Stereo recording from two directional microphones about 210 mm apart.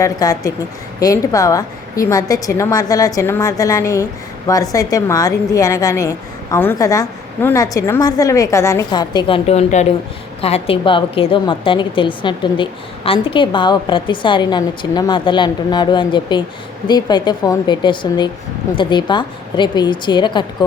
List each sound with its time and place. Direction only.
0.0 s a woman's voice: 15° left (ahead or behind)